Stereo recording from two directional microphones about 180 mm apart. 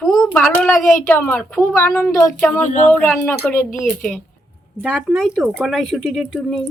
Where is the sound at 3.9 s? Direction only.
5° left (ahead or behind).